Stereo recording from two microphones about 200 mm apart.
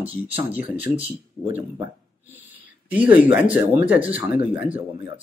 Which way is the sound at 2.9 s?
5° right (ahead or behind).